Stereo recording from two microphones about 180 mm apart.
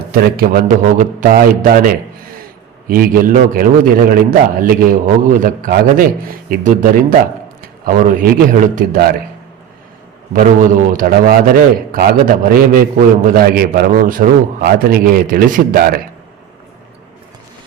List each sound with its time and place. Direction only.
0.1 s a man's voice: 60° right (ahead or behind)
2.9 s a man's voice: 55° right (ahead or behind)
10.3 s a man's voice: 45° right (ahead or behind)